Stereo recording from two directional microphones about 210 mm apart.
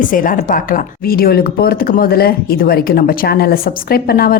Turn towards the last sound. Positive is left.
turn(degrees=45)  # may be behind; listen again after turning